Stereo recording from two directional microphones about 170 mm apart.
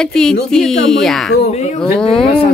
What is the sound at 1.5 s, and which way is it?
Speech, 40° left (ahead or behind).